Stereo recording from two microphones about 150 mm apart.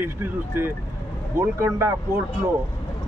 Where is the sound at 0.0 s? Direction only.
15° right (ahead or behind).